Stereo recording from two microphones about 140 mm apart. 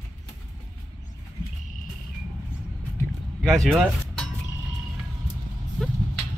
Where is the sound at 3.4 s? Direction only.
Centre (ahead or behind).